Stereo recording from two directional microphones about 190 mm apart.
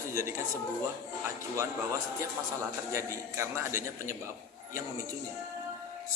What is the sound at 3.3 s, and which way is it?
Speech, 15° right (ahead or behind).